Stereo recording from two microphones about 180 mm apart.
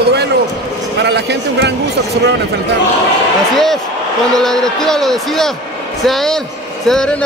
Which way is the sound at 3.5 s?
Centre (ahead or behind).